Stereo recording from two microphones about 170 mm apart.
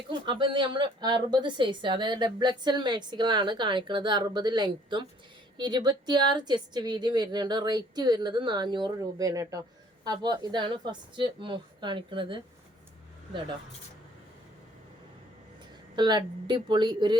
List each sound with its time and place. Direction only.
0.1 s a woman's voice: 30° right (ahead or behind)
16.0 s a woman's voice: 25° right (ahead or behind)